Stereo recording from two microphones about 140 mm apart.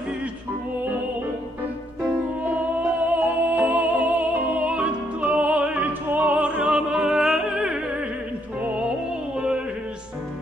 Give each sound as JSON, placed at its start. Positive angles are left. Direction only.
{"t": 3.1, "sound": "music", "side_deg": -10}